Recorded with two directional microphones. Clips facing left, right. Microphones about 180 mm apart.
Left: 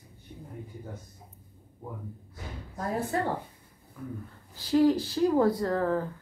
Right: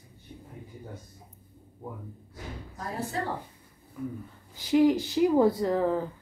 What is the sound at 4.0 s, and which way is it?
Speech, 10° right (ahead or behind).